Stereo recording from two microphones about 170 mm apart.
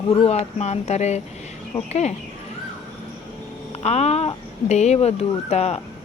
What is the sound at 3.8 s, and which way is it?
Speech, 40° left (ahead or behind).